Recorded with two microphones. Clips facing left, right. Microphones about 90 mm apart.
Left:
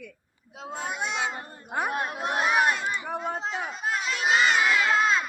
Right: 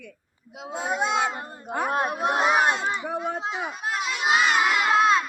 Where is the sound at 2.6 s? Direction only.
25° right (ahead or behind).